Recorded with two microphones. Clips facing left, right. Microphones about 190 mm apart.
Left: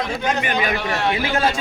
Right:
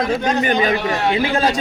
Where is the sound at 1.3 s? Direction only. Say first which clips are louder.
Right 2 dB; 40° right (ahead or behind).